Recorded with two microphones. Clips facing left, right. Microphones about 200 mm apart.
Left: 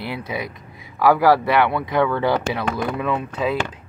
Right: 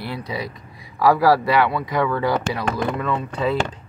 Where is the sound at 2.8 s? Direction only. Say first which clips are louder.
Even; 10° left (ahead or behind).